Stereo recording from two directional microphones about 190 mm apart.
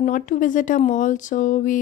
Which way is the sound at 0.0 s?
45° left (ahead or behind).